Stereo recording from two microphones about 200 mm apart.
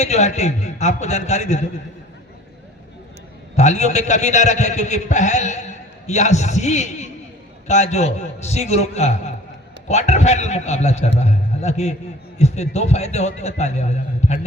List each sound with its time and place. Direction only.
0.0 s a man's voice: 35° left (ahead or behind)
3.5 s a man's voice: 35° left (ahead or behind)